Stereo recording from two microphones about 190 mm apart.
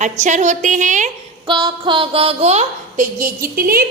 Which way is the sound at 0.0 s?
40° right (ahead or behind).